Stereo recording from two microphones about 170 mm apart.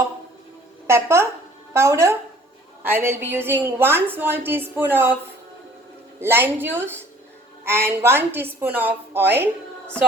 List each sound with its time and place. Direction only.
0.9 s a woman's voice: 15° right (ahead or behind)
6.1 s a woman's voice: 15° right (ahead or behind)